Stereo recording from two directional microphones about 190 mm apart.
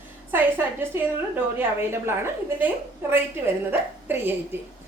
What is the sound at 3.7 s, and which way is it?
Speech, 10° right (ahead or behind).